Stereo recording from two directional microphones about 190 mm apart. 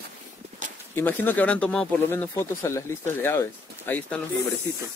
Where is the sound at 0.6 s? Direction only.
40° right (ahead or behind).